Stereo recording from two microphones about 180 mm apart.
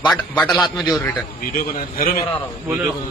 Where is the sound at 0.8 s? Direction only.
20° left (ahead or behind).